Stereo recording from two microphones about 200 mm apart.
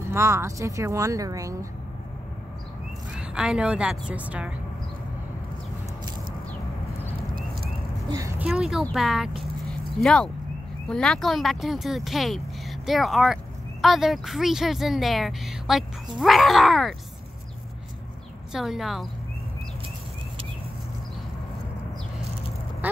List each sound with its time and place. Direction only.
0.1 s speech: 15° right (ahead or behind)
3.2 s speech: 5° right (ahead or behind)
8.1 s speech: 15° right (ahead or behind)
9.4 s a sound: centre (ahead or behind)
10.9 s speech: 5° left (ahead or behind)
18.5 s speech: centre (ahead or behind)